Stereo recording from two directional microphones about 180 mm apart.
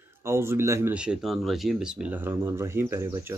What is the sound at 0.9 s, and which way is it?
Speech, 5° right (ahead or behind).